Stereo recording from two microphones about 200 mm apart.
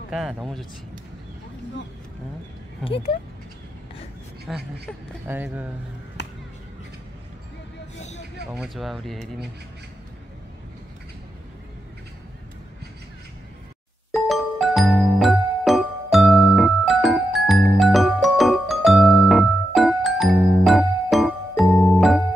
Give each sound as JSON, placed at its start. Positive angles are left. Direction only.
{"t": 0.1, "sound": "speech", "side_deg": 0}
{"t": 4.5, "sound": "speech", "side_deg": 0}
{"t": 6.2, "sound": "a sound", "side_deg": 60}
{"t": 8.5, "sound": "speech", "side_deg": 0}
{"t": 14.1, "sound": "music", "side_deg": 0}